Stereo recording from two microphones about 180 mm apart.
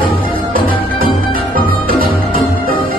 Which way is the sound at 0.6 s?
50° right (ahead or behind).